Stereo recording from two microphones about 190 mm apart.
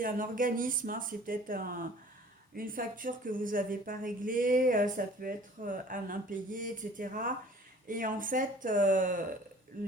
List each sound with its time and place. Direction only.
0.0 s speech: 45° right (ahead or behind)